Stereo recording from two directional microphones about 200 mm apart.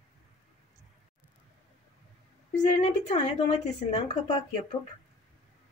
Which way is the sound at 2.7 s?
30° left (ahead or behind).